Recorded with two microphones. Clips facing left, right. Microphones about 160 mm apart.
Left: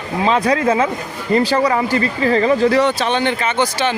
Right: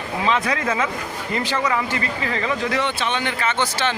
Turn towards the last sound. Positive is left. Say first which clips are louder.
# left 4 dB
turn(degrees=15)  # may be behind; listen again after turning